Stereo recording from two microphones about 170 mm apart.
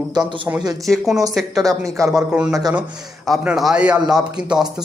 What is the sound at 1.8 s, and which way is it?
Speech, 20° right (ahead or behind).